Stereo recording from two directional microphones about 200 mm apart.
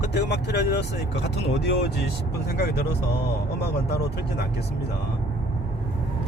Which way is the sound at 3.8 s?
55° left (ahead or behind).